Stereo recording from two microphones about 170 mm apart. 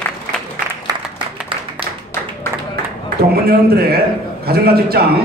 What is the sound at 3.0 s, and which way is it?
A man's voice, 65° right (ahead or behind).